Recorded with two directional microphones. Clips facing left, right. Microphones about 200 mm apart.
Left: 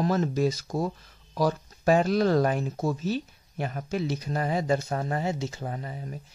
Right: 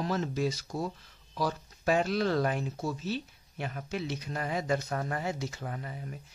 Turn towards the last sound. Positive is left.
turn(degrees=30)  # may be behind; listen again after turning